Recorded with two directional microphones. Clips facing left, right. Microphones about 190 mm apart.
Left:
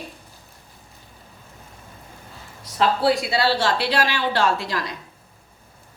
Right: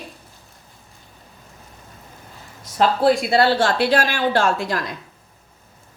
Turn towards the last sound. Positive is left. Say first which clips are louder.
# right 1 dB
turn(degrees=-50)  # may be behind; listen again after turning